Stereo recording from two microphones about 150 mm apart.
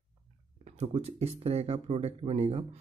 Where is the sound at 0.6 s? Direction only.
45° right (ahead or behind).